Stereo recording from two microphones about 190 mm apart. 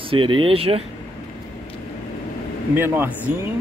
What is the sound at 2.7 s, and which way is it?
Speech, 10° right (ahead or behind).